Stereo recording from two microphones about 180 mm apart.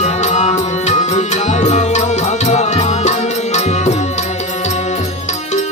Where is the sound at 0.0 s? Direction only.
40° left (ahead or behind).